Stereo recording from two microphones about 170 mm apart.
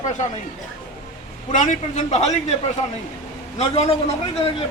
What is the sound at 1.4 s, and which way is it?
A man's voice, 45° left (ahead or behind).